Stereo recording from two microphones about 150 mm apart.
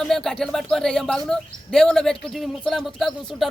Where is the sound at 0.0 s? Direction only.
Centre (ahead or behind).